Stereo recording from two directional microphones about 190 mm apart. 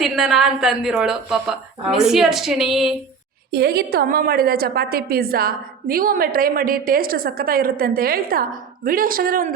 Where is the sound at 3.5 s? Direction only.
55° right (ahead or behind).